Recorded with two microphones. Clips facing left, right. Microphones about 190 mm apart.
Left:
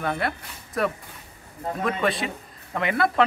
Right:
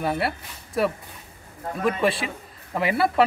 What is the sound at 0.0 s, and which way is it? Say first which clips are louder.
Speech: right 2 dB; 5° right (ahead or behind).